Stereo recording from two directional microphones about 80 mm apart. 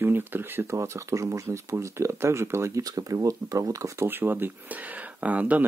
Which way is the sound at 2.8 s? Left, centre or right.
Right.